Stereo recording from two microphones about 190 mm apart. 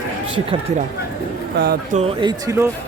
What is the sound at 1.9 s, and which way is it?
Speech, 30° right (ahead or behind).